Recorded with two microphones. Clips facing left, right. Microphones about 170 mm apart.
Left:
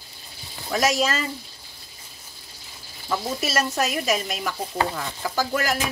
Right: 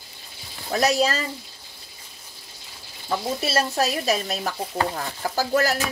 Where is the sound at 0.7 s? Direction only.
35° right (ahead or behind).